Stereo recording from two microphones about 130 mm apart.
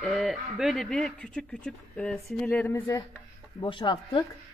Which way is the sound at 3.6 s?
40° left (ahead or behind).